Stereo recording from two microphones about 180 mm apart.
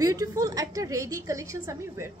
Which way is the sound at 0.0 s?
20° right (ahead or behind).